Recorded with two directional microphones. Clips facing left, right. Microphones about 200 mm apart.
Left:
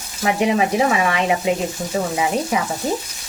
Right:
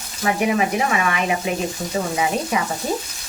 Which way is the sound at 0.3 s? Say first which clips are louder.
Left 3 dB; 25° left (ahead or behind).